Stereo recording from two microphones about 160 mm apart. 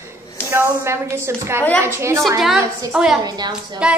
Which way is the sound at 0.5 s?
15° right (ahead or behind).